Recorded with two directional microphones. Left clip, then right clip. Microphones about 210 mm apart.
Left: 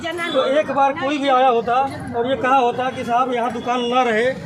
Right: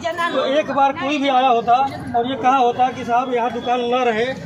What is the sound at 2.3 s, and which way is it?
Speech, 30° left (ahead or behind).